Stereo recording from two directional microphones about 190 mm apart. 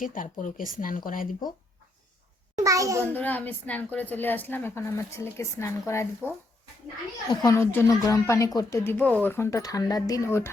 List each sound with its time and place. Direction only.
0.0 s speech: 45° left (ahead or behind)
2.6 s a sound: 15° right (ahead or behind)
3.0 s speech: 10° left (ahead or behind)
7.3 s speech: 15° left (ahead or behind)